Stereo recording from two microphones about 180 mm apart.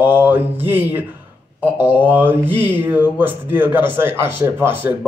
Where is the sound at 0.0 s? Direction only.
10° right (ahead or behind).